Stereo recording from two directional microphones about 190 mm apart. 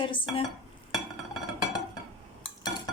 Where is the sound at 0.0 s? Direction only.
25° left (ahead or behind).